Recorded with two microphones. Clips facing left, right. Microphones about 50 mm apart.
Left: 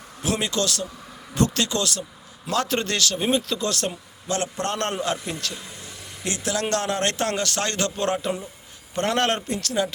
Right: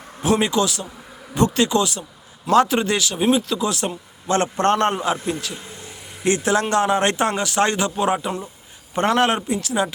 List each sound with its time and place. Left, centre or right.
0.3 s speech: centre
4.3 s a man's voice: right
4.8 s speech: right
5.2 s speech: centre
6.2 s speech: right
6.7 s speech: centre